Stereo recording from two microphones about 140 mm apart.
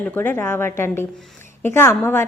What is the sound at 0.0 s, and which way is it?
A woman's voice, 15° left (ahead or behind).